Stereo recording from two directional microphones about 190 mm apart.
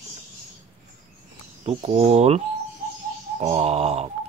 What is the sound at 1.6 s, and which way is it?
Speech, 30° right (ahead or behind).